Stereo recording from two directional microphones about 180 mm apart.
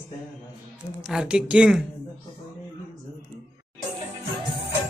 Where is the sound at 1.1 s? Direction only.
5° right (ahead or behind).